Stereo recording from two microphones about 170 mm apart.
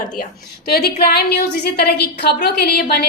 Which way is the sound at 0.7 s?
65° left (ahead or behind).